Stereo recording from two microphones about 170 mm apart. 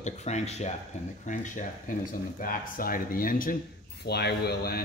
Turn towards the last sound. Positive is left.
turn(degrees=70)  # may be behind; listen again after turning